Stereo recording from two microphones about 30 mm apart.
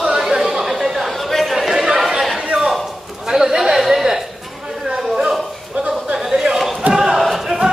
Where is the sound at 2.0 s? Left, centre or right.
Centre.